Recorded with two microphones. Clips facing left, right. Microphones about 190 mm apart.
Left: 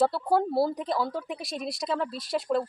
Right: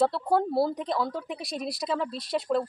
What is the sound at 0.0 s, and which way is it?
Speech, centre (ahead or behind).